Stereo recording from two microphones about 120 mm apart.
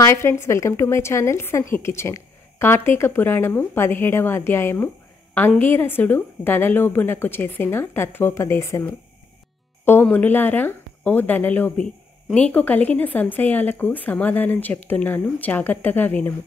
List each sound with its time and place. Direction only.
0.0 s a woman's voice: 25° left (ahead or behind)